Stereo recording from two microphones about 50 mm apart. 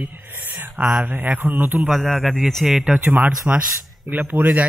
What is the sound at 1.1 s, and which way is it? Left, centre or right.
Speech, right.